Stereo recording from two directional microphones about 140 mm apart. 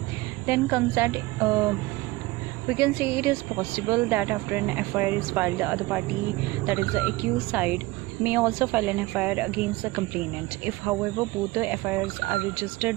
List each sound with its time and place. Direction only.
0.5 s speech: 15° right (ahead or behind)
2.8 s speech: 15° right (ahead or behind)